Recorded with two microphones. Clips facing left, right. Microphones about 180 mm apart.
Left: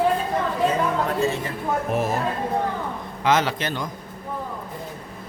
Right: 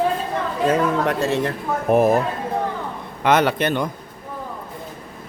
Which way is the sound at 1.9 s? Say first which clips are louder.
Right 11 dB; 55° right (ahead or behind).